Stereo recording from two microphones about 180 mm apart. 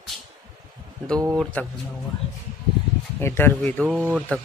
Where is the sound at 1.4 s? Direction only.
10° left (ahead or behind).